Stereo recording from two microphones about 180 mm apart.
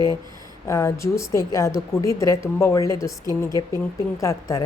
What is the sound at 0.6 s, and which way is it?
A woman's voice, 15° left (ahead or behind).